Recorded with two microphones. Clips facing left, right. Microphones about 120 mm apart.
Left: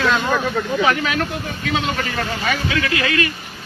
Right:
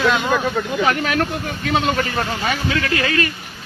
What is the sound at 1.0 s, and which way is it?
Speech, 45° right (ahead or behind).